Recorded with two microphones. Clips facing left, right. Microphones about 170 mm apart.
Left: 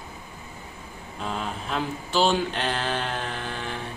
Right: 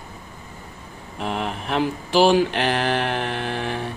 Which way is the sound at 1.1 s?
70° right (ahead or behind).